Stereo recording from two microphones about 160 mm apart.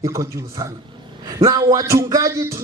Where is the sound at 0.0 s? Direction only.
20° right (ahead or behind).